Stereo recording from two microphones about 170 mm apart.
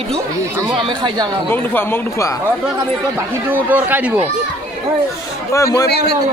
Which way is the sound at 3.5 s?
10° right (ahead or behind).